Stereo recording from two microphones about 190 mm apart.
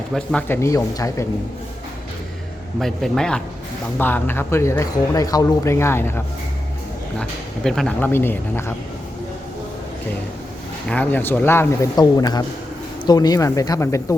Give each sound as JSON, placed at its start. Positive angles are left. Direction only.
{"t": 0.1, "sound": "speech", "side_deg": 0}
{"t": 2.8, "sound": "a man's voice", "side_deg": 0}
{"t": 10.8, "sound": "speech", "side_deg": 10}